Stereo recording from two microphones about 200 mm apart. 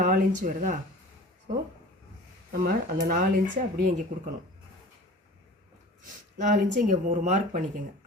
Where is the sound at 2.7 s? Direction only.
40° right (ahead or behind).